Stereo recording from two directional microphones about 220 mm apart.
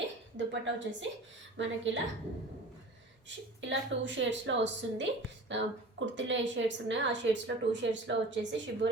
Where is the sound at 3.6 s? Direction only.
55° right (ahead or behind).